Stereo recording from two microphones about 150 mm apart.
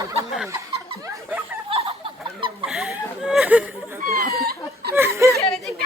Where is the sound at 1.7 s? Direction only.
40° right (ahead or behind).